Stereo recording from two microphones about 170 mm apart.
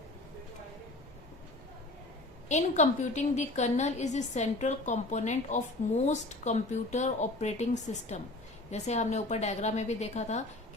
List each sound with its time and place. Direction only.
2.5 s a woman's voice: 45° left (ahead or behind)